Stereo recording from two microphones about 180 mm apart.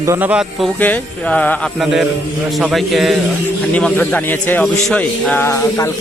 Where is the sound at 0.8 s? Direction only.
10° left (ahead or behind).